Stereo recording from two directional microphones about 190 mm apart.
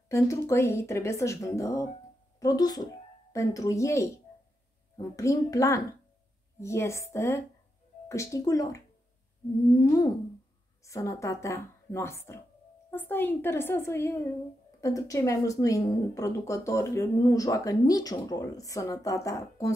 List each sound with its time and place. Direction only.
0.1 s speech: 15° left (ahead or behind)